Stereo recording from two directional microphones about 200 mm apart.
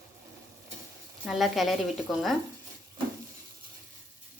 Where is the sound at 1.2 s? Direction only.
Centre (ahead or behind).